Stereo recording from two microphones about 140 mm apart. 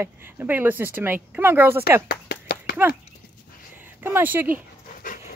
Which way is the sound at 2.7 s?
90° left.